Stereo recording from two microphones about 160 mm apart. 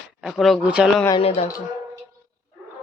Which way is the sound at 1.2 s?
40° left (ahead or behind).